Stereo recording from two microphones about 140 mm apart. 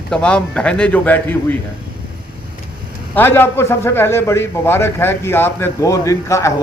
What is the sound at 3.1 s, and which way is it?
A man's voice, 15° left (ahead or behind).